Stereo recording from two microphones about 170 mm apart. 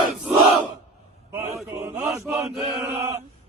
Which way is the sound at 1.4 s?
15° right (ahead or behind).